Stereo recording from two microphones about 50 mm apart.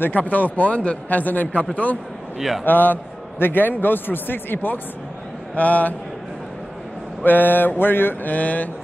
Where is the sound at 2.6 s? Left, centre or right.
Left.